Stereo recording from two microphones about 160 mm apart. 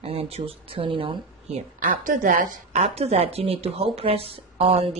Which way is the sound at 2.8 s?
40° right (ahead or behind).